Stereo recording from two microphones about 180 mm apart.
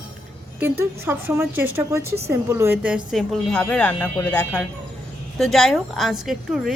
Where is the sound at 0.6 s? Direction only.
15° right (ahead or behind).